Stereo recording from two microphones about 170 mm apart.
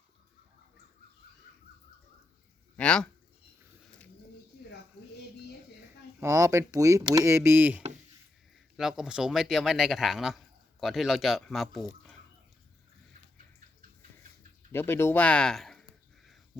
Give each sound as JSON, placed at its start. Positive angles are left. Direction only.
{"t": 2.7, "sound": "speech", "side_deg": 5}
{"t": 6.1, "sound": "speech", "side_deg": -20}
{"t": 14.7, "sound": "a sound", "side_deg": 15}